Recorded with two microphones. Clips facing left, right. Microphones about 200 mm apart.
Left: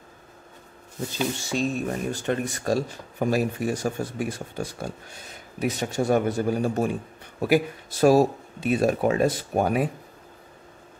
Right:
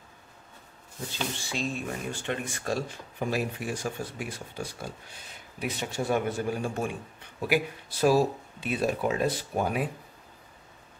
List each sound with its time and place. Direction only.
1.4 s speech: 45° left (ahead or behind)